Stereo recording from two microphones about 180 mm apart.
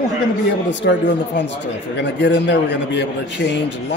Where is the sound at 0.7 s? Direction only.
75° left (ahead or behind).